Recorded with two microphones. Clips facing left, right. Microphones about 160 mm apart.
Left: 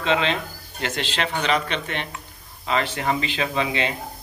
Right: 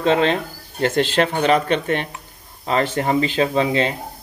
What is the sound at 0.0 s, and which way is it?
Speech, 45° right (ahead or behind).